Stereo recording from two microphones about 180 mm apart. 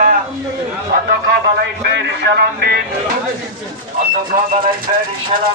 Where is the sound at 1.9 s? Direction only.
70° right (ahead or behind).